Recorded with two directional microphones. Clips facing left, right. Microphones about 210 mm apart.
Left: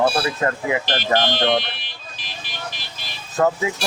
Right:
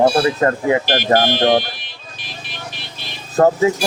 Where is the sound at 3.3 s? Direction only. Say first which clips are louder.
Right 6 dB; 35° right (ahead or behind).